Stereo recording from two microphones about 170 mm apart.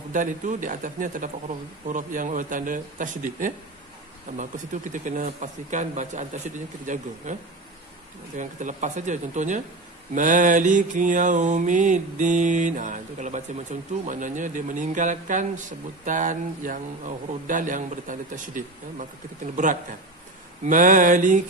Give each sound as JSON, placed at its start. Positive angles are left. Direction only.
{"t": 0.1, "sound": "mantra", "side_deg": -50}
{"t": 4.9, "sound": "mantra", "side_deg": -45}